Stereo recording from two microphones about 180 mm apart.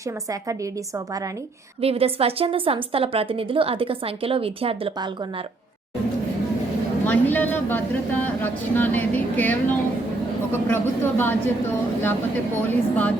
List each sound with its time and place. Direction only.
0.3 s a woman's voice: 15° right (ahead or behind)
1.8 s a woman's voice: 35° right (ahead or behind)
7.0 s speech: 10° left (ahead or behind)
12.6 s speech: 10° left (ahead or behind)